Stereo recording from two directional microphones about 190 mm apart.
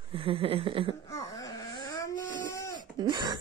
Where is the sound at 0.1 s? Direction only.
30° right (ahead or behind).